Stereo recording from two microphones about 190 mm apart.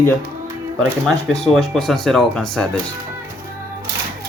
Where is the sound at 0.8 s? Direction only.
Centre (ahead or behind).